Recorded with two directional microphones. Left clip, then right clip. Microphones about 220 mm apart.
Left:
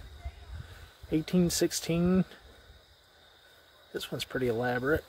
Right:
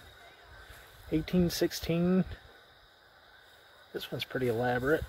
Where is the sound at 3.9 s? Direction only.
15° left (ahead or behind).